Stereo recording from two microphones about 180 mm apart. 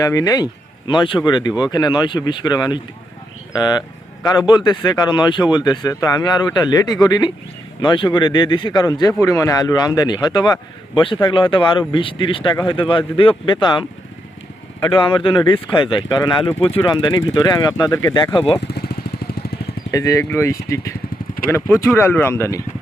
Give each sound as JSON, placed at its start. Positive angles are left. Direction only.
{"t": 0.0, "sound": "speech", "side_deg": 20}
{"t": 18.7, "sound": "jackhammer", "side_deg": 60}
{"t": 19.9, "sound": "speech", "side_deg": 20}